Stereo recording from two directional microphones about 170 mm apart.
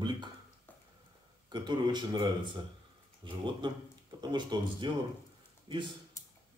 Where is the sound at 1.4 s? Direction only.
25° right (ahead or behind).